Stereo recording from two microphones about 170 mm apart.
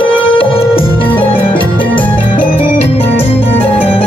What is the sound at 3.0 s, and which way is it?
Music, 10° left (ahead or behind).